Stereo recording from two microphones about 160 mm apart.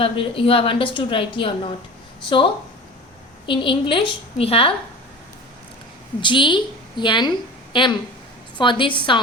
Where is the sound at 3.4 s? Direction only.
30° left (ahead or behind).